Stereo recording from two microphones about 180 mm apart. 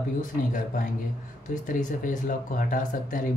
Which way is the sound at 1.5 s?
45° left (ahead or behind).